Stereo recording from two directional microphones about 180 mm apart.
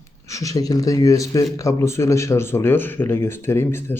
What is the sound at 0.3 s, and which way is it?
A man's voice, 20° left (ahead or behind).